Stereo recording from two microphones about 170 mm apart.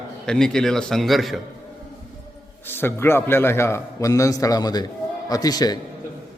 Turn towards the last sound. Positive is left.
turn(degrees=20)  # may be behind; listen again after turning